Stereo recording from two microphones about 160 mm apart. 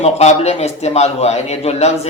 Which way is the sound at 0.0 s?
40° left (ahead or behind).